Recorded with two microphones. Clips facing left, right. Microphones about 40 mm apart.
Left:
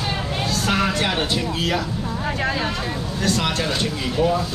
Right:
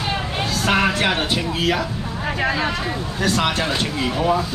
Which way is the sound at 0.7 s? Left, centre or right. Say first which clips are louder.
Right 4 dB; right.